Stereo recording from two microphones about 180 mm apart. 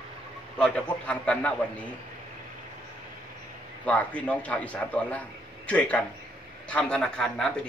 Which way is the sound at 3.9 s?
10° left (ahead or behind).